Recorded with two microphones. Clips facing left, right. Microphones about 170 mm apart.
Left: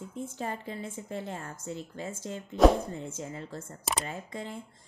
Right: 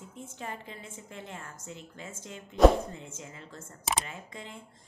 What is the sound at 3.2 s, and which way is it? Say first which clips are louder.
A woman's voice: left 7 dB; 35° left (ahead or behind).